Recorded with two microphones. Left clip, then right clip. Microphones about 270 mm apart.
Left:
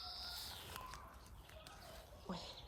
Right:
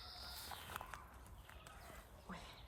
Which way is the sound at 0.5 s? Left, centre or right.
Centre.